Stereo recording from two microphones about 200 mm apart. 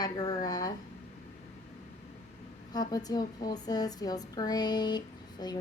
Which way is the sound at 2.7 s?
20° left (ahead or behind).